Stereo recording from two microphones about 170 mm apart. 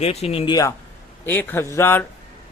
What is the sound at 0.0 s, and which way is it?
Speech, 35° left (ahead or behind).